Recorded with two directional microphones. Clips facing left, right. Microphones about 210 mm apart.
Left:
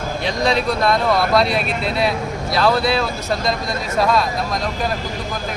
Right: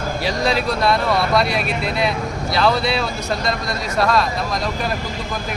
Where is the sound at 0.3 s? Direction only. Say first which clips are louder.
Left 2 dB; centre (ahead or behind).